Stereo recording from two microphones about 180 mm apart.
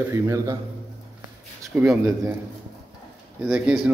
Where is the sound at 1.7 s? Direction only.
5° right (ahead or behind).